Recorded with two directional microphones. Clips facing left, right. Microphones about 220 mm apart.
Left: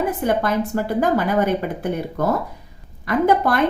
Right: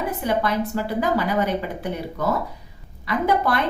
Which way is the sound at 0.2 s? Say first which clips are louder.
Left 3 dB; 50° left (ahead or behind).